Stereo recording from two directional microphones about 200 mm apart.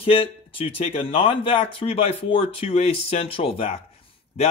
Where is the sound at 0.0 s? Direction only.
25° left (ahead or behind).